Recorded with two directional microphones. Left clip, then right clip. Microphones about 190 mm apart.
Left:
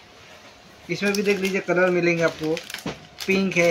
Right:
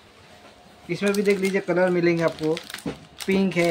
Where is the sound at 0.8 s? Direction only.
15° right (ahead or behind).